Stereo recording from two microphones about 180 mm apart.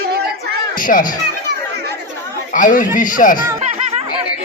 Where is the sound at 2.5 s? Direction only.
45° left (ahead or behind).